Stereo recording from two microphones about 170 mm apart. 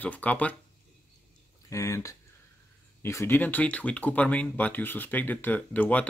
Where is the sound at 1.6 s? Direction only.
15° left (ahead or behind).